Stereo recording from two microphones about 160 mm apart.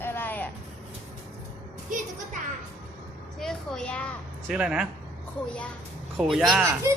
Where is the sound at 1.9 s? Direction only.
55° right (ahead or behind).